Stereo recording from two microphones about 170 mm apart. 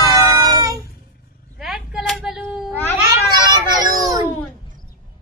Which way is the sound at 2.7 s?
10° left (ahead or behind).